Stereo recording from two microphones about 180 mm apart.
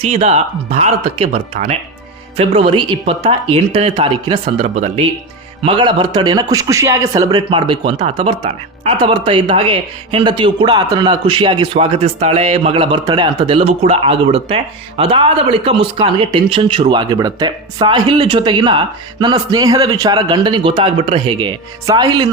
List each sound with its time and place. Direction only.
0.0 s speech: 35° right (ahead or behind)
4.7 s speech: 40° right (ahead or behind)
5.6 s speech: 25° right (ahead or behind)